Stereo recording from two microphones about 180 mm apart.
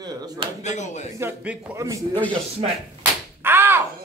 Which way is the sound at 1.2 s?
10° right (ahead or behind).